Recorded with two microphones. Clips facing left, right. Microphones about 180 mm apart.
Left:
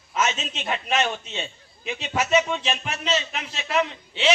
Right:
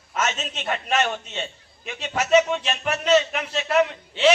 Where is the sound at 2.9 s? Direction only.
55° right (ahead or behind).